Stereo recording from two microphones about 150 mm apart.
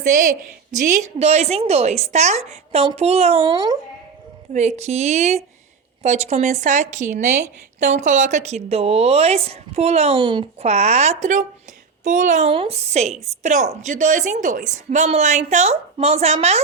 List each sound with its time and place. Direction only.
0.1 s speech: 60° right (ahead or behind); by 3.8 s 30° right (ahead or behind)
4.5 s speech: 50° right (ahead or behind)